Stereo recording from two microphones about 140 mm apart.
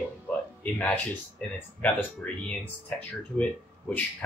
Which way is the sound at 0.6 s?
10° left (ahead or behind).